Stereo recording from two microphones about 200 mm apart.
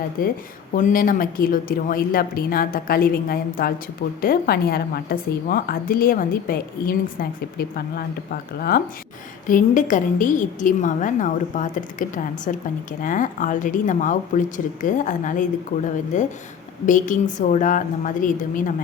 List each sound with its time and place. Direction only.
0.2 s a woman's voice: 45° left (ahead or behind)